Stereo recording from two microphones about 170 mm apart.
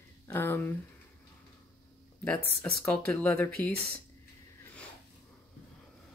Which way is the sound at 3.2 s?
15° left (ahead or behind).